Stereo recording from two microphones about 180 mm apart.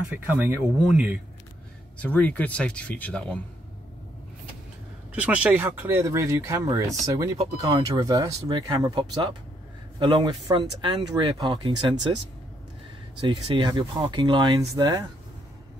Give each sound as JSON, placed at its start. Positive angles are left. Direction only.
{"t": 0.3, "sound": "speech", "side_deg": -10}
{"t": 2.0, "sound": "speech", "side_deg": 10}
{"t": 5.1, "sound": "speech", "side_deg": -10}
{"t": 13.3, "sound": "speech", "side_deg": -25}